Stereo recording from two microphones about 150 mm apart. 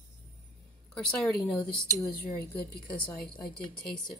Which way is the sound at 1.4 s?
25° left (ahead or behind).